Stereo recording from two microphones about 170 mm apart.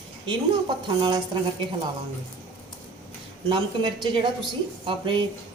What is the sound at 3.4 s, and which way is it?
A woman's voice, 25° right (ahead or behind).